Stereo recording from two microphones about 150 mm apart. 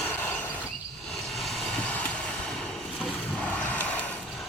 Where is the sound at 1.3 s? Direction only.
Centre (ahead or behind).